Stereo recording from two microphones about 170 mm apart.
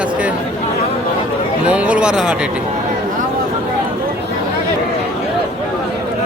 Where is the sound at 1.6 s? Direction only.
5° right (ahead or behind).